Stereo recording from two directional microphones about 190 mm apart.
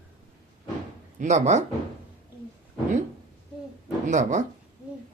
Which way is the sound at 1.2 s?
40° right (ahead or behind).